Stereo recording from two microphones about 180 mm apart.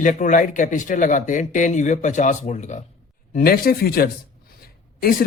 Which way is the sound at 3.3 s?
55° left (ahead or behind).